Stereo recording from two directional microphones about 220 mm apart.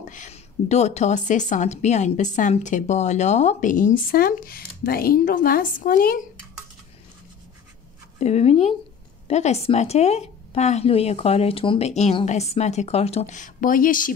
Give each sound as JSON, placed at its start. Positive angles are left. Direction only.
{"t": 0.1, "sound": "a woman's voice", "side_deg": 35}
{"t": 8.2, "sound": "a woman's voice", "side_deg": 30}